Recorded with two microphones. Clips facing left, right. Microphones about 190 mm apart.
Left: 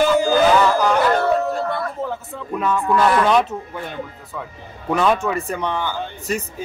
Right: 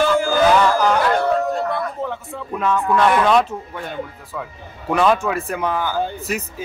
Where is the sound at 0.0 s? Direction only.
15° left (ahead or behind).